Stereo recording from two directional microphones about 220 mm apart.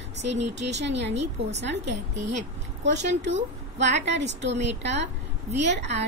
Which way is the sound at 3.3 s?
30° right (ahead or behind).